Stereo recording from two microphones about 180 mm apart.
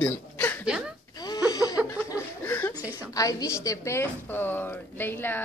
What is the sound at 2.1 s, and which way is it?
Chuckle, 15° left (ahead or behind).